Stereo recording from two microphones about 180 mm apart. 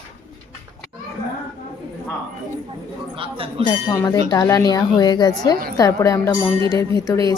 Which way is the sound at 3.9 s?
20° left (ahead or behind).